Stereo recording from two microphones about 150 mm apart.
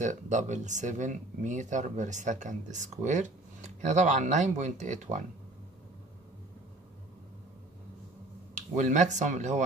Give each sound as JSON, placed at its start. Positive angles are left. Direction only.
{"t": 0.0, "sound": "speech", "side_deg": -55}
{"t": 8.7, "sound": "speech", "side_deg": -55}